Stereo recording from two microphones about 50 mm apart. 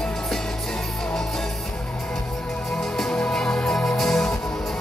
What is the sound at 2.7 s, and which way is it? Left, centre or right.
Music, centre.